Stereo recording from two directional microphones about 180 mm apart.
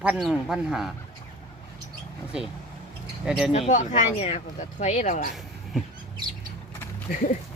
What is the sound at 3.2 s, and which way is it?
Speech, 5° right (ahead or behind).